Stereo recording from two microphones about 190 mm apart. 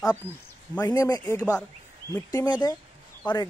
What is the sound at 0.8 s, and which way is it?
A man's voice, 20° left (ahead or behind).